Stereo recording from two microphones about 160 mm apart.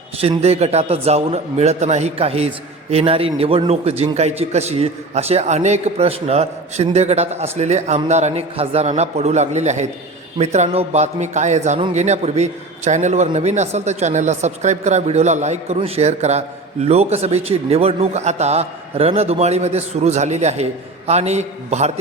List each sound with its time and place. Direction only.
0.2 s a man's voice: 40° right (ahead or behind)